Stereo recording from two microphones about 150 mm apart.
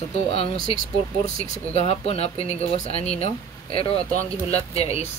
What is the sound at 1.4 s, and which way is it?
Speech, 45° left (ahead or behind).